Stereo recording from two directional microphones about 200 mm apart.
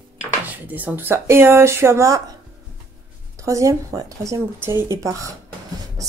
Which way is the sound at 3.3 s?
15° right (ahead or behind).